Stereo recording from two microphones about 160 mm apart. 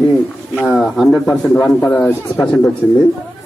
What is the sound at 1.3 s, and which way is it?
Speech, 20° left (ahead or behind).